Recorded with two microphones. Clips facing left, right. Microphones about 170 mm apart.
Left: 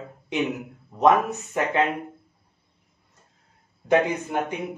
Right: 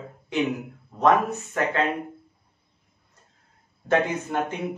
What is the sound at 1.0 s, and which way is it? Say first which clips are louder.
Speech: left 1 dB; 20° left (ahead or behind).